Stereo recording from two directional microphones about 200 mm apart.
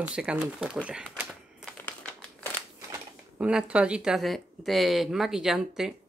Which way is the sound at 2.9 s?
5° right (ahead or behind).